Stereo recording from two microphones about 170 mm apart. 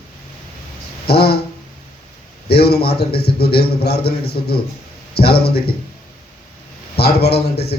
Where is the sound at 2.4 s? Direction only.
70° left (ahead or behind).